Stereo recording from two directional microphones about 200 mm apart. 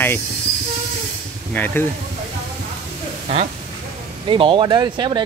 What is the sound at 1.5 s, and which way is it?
Speech, 10° left (ahead or behind).